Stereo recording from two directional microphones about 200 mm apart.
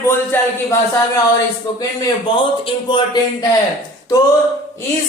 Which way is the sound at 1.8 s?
20° left (ahead or behind).